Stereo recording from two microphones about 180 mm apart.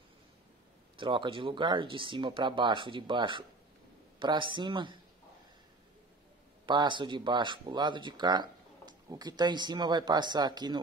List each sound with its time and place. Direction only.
0.9 s speech: 25° right (ahead or behind)
6.6 s speech: 25° right (ahead or behind)